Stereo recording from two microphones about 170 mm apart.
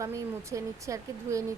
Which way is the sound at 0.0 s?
20° right (ahead or behind).